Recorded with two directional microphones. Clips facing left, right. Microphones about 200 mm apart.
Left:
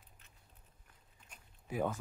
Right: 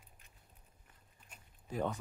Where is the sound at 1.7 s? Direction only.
5° left (ahead or behind).